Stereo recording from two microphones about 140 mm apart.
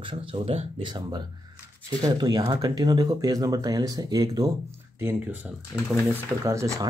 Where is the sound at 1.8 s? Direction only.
30° right (ahead or behind).